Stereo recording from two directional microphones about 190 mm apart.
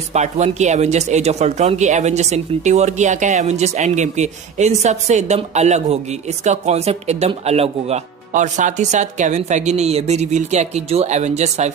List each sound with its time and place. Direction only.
0.1 s speech: 35° right (ahead or behind)